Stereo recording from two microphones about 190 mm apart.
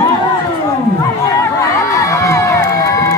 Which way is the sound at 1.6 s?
15° left (ahead or behind).